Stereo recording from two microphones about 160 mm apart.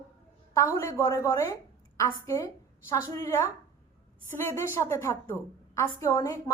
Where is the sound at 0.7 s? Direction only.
15° left (ahead or behind).